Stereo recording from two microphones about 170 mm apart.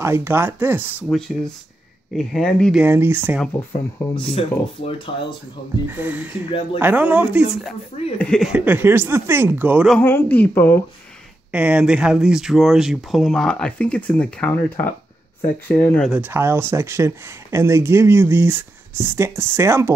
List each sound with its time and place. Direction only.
0.0 s speech: 15° right (ahead or behind)
2.1 s speech: 5° left (ahead or behind)
2.8 s speech: 10° right (ahead or behind)
3.5 s speech: 35° left (ahead or behind)
5.9 s speech: 10° right (ahead or behind)
9.8 s speech: 10° left (ahead or behind)
11.5 s speech: 5° right (ahead or behind); by 16.1 s 10° left (ahead or behind)
16.1 s speech: 10° right (ahead or behind)